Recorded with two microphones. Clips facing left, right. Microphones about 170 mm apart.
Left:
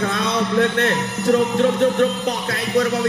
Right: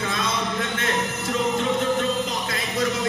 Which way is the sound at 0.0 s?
65° left (ahead or behind).